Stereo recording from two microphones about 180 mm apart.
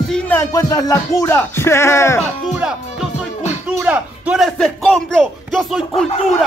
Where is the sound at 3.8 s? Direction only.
5° right (ahead or behind).